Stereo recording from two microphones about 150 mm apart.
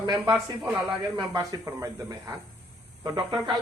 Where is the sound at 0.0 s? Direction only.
30° right (ahead or behind).